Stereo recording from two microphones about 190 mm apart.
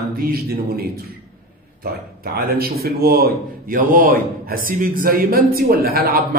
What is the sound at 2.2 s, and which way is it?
Speech, 55° right (ahead or behind).